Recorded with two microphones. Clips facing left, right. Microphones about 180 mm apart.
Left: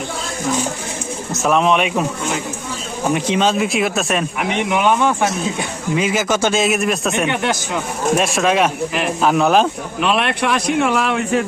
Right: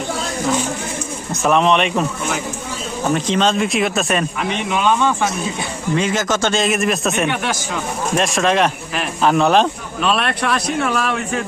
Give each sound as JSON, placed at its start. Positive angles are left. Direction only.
{"t": 1.3, "sound": "speech", "side_deg": 0}
{"t": 3.1, "sound": "speech", "side_deg": 10}
{"t": 4.7, "sound": "a man's voice", "side_deg": 15}
{"t": 10.1, "sound": "a man's voice", "side_deg": 15}